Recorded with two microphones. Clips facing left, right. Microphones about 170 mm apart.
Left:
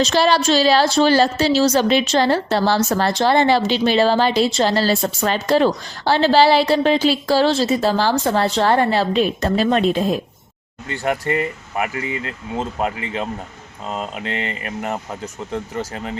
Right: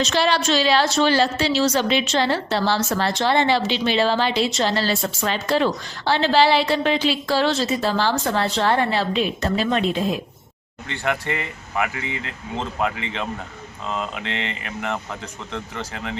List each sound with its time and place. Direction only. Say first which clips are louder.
0.0 s a woman's voice: left 4 dB; 40° left (ahead or behind)